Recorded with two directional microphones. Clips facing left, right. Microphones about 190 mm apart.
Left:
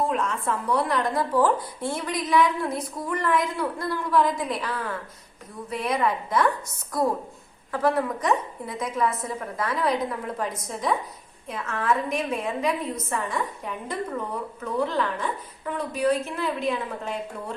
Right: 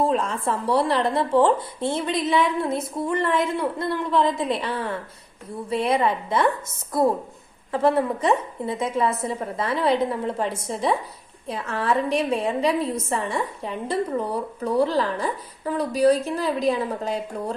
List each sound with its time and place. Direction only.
0.0 s speech: 30° right (ahead or behind)
7.7 s a woman's voice: 25° right (ahead or behind)